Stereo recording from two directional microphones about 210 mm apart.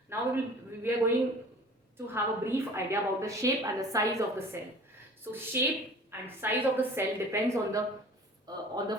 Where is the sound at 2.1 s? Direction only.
10° right (ahead or behind).